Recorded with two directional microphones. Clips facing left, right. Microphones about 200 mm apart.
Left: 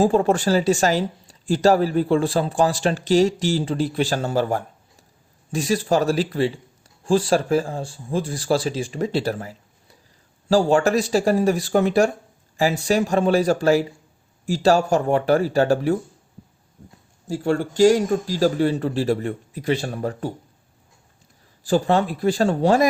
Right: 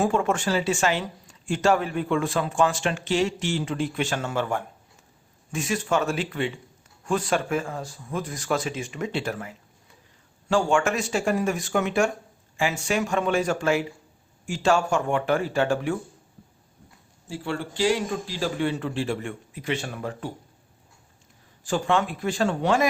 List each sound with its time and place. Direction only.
0.0 s speech: 35° left (ahead or behind)
17.2 s speech: 45° left (ahead or behind)
21.6 s speech: 35° left (ahead or behind)